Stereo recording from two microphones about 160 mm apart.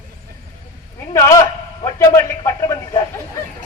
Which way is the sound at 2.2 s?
20° left (ahead or behind).